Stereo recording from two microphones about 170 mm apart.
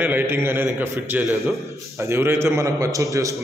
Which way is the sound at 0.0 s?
10° right (ahead or behind).